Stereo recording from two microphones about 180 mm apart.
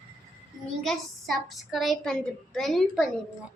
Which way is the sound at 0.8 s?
Centre (ahead or behind).